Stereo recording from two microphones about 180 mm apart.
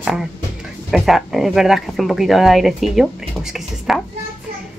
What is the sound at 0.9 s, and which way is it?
Speech, centre (ahead or behind).